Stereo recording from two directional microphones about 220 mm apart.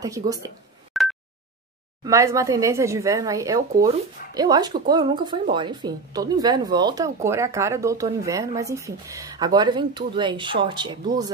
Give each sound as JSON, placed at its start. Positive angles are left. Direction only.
{"t": 0.0, "sound": "speech", "side_deg": -15}
{"t": 1.0, "sound": "a sound", "side_deg": 0}
{"t": 2.0, "sound": "speech", "side_deg": -15}